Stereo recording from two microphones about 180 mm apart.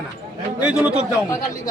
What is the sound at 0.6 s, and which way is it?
Speech, 5° right (ahead or behind).